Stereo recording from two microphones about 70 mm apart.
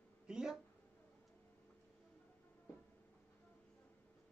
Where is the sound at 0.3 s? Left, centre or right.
Centre.